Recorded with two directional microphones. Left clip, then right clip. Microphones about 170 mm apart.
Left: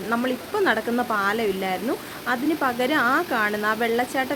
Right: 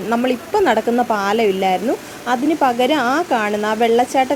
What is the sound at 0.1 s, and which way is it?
Speech, 20° right (ahead or behind).